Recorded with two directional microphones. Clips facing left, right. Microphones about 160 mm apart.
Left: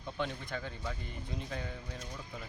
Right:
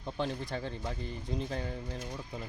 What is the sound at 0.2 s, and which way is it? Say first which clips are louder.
Speech: right 3 dB; 30° right (ahead or behind).